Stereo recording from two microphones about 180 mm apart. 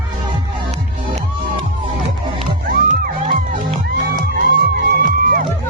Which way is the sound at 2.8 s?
45° right (ahead or behind).